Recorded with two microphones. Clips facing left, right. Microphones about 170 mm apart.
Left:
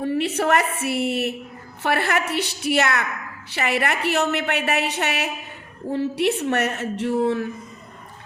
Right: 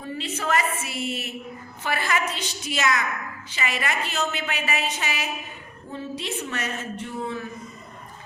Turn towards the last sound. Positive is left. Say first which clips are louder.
# left 10 dB
turn(degrees=70)  # may be behind; listen again after turning